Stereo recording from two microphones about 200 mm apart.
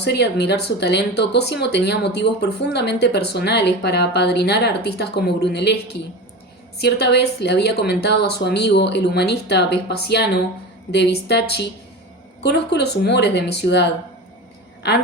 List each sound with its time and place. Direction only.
0.0 s speech: 55° left (ahead or behind)